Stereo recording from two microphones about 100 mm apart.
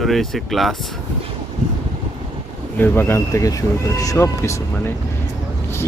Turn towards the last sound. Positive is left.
turn(degrees=30)  # may be behind; listen again after turning